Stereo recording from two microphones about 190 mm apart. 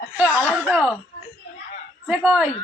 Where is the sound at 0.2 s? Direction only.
5° right (ahead or behind).